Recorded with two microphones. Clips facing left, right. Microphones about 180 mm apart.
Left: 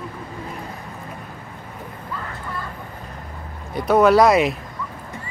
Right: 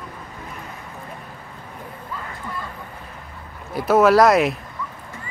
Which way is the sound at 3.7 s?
5° right (ahead or behind).